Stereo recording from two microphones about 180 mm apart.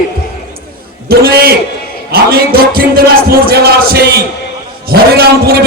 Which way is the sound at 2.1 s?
55° right (ahead or behind).